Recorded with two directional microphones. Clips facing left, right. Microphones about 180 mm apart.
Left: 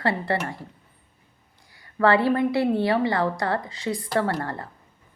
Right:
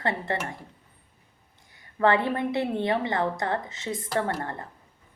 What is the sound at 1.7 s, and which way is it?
A woman's voice, 20° right (ahead or behind).